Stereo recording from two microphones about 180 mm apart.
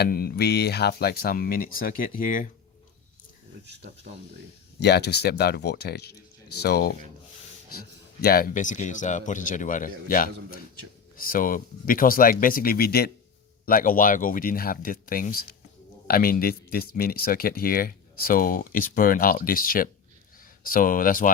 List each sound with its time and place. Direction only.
0.0 s speech: 55° left (ahead or behind)
4.8 s speech: 65° left (ahead or behind); by 21.2 s 50° left (ahead or behind)